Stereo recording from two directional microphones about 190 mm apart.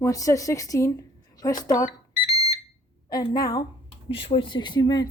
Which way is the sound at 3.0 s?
20° left (ahead or behind).